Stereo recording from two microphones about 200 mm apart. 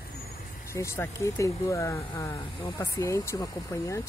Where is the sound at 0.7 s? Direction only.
15° left (ahead or behind).